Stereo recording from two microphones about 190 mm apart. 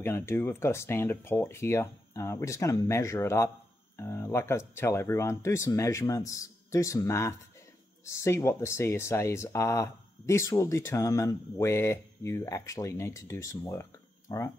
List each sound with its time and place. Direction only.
0.0 s speech: 15° left (ahead or behind)